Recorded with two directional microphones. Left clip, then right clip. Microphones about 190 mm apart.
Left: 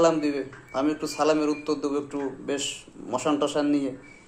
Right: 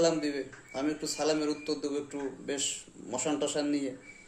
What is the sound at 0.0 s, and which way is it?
A man's voice, 15° right (ahead or behind).